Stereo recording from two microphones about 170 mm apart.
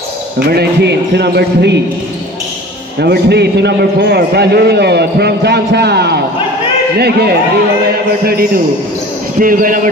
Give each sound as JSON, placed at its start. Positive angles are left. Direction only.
{"t": 0.5, "sound": "speech", "side_deg": -75}
{"t": 3.0, "sound": "a man's voice", "side_deg": -75}